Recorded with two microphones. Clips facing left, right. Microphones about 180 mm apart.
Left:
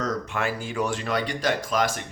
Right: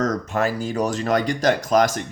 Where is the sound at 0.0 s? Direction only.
45° right (ahead or behind).